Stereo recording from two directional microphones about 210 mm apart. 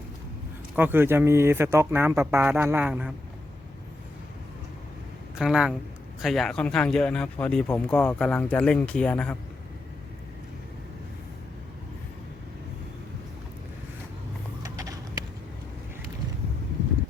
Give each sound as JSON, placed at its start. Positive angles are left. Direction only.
{"t": 0.8, "sound": "speech", "side_deg": -10}
{"t": 5.4, "sound": "speech", "side_deg": 0}
{"t": 14.6, "sound": "clip-clop", "side_deg": -15}